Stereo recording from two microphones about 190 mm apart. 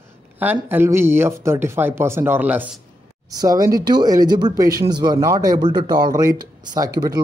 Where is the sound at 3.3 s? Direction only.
20° right (ahead or behind).